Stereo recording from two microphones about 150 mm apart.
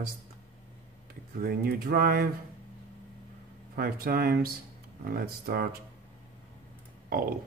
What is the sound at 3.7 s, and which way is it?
Speech, 90° right.